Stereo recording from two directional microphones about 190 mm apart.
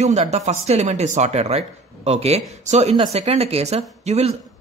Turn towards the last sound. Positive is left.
turn(degrees=-35)  # may be behind; listen again after turning